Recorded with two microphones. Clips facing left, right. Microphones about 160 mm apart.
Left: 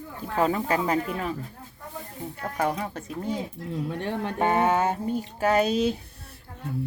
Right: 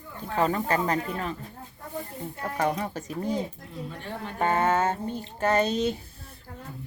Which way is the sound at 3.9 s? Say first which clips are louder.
Left 7 dB; 70° left (ahead or behind).